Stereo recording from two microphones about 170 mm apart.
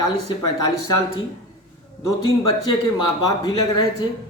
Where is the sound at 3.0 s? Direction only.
25° left (ahead or behind).